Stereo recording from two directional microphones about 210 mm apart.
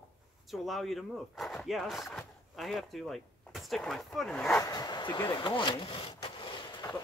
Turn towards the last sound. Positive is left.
turn(degrees=20)  # may be behind; listen again after turning